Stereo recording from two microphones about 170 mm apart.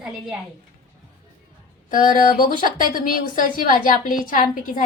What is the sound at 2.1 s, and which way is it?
A woman's voice, 55° left (ahead or behind).